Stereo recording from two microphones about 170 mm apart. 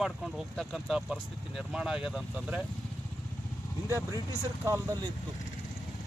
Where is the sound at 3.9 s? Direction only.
15° right (ahead or behind).